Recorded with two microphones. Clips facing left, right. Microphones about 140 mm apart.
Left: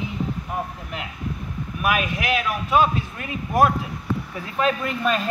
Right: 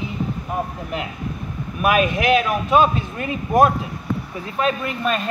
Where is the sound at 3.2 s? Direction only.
40° right (ahead or behind).